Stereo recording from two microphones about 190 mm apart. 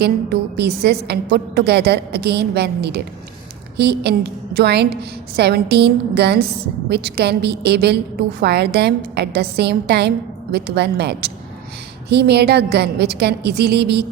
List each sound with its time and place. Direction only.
0.0 s a woman's voice: 60° right (ahead or behind)